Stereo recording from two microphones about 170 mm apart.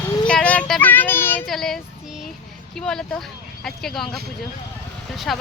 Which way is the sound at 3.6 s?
Centre (ahead or behind).